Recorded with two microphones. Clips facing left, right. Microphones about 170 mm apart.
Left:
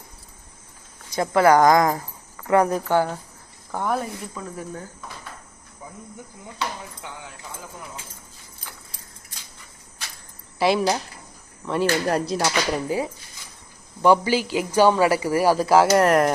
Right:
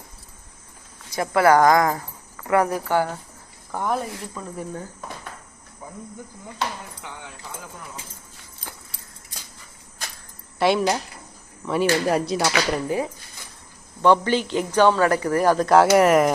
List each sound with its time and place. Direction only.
1.1 s a woman's voice: 20° left (ahead or behind)
3.8 s speech: 10° right (ahead or behind)
4.2 s speech: centre (ahead or behind)
10.6 s speech: centre (ahead or behind)
14.0 s speech: 10° left (ahead or behind)